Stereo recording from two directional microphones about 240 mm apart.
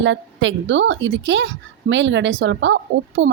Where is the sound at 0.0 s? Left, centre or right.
Right.